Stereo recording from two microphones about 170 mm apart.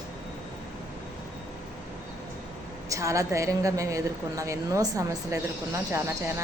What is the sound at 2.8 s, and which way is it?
A woman's voice, 15° right (ahead or behind).